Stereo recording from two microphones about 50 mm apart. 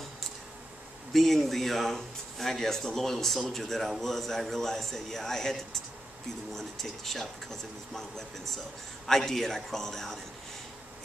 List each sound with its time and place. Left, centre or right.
1.1 s speech: centre